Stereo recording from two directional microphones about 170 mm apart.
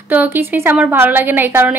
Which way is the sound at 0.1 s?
10° right (ahead or behind).